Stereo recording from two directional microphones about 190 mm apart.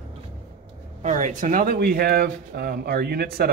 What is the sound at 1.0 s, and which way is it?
Speech, 40° right (ahead or behind).